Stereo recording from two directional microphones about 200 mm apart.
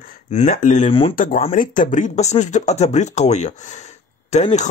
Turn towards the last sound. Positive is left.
turn(degrees=35)  # may be behind; listen again after turning